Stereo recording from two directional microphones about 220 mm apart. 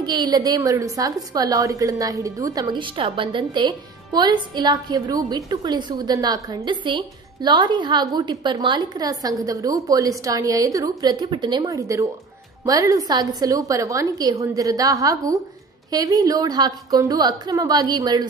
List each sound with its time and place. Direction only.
0.0 s a woman's voice: 20° right (ahead or behind)